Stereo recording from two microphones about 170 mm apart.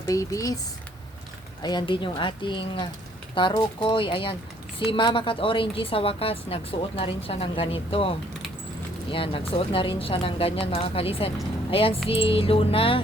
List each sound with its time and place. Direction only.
0.0 s speech: 20° left (ahead or behind)
1.6 s a woman's voice: 25° left (ahead or behind)